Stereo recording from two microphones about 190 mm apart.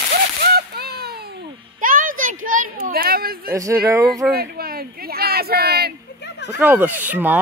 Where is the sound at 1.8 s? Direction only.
45° right (ahead or behind).